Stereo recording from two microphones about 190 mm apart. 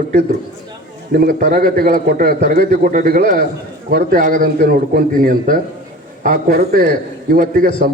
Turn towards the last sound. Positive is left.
turn(degrees=-45)  # may be behind; listen again after turning